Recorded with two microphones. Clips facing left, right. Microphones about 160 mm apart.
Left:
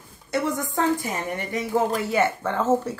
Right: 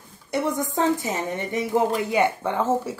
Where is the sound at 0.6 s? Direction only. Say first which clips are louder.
Right 1 dB; 20° right (ahead or behind).